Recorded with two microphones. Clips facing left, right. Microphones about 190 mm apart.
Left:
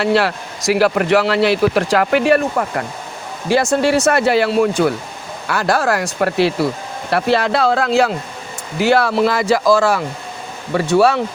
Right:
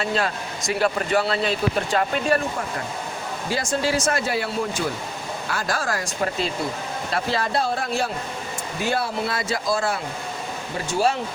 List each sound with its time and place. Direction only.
0.0 s speech: 75° left (ahead or behind)
5.5 s speech: 70° left (ahead or behind); by 10.0 s 90° left
10.7 s speech: 70° left (ahead or behind)